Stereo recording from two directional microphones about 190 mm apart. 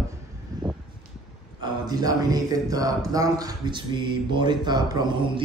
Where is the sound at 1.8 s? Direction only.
20° right (ahead or behind).